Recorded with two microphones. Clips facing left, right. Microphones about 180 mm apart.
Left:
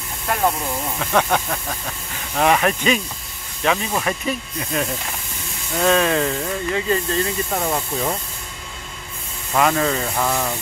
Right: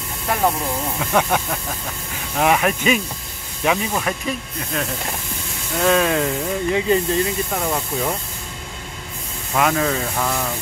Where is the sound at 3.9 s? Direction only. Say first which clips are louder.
Left 1 dB; centre (ahead or behind); by 7.3 s 15° right (ahead or behind).